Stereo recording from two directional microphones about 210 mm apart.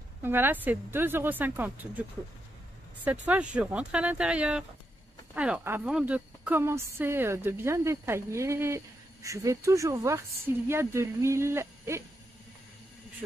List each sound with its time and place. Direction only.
0.2 s speech: 10° right (ahead or behind)
3.1 s speech: 5° right (ahead or behind)